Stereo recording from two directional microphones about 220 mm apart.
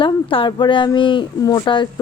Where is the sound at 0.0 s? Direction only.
25° left (ahead or behind).